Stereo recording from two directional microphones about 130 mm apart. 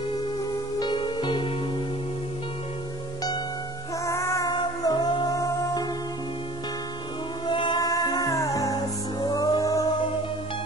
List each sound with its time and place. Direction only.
0.7 s music: 40° left (ahead or behind)
4.0 s music: 20° left (ahead or behind)
7.4 s music: 35° left (ahead or behind)